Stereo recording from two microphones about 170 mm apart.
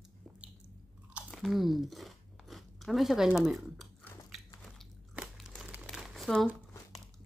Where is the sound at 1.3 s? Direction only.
Centre (ahead or behind).